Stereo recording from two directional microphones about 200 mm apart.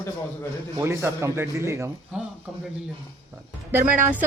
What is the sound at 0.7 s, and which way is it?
A man's voice, 15° right (ahead or behind).